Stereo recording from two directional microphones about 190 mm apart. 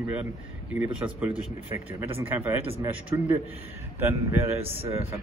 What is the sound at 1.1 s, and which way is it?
Speech, 10° right (ahead or behind).